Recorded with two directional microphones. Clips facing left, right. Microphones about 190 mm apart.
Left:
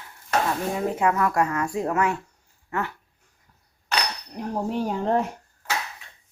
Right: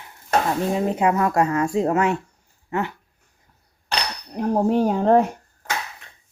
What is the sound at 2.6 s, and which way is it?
Dog, 20° right (ahead or behind).